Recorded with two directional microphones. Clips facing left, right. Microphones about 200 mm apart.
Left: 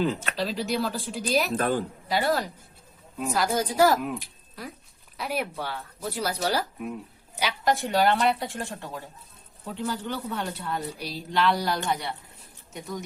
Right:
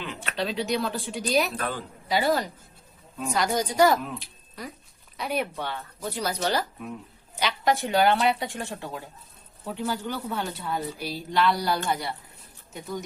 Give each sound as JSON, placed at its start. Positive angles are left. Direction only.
{"t": 0.0, "sound": "speech", "side_deg": 40}
{"t": 0.3, "sound": "speech", "side_deg": 0}
{"t": 1.5, "sound": "speech", "side_deg": 45}
{"t": 2.0, "sound": "speech", "side_deg": 0}
{"t": 5.1, "sound": "speech", "side_deg": 5}